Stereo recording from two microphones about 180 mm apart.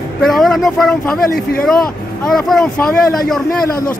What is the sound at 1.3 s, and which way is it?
Speech, 60° left (ahead or behind).